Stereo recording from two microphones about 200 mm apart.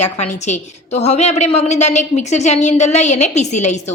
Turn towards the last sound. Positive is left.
turn(degrees=35)  # may be behind; listen again after turning